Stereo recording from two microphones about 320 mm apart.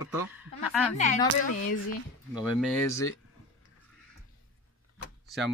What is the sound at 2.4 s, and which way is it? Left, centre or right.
Speech, centre.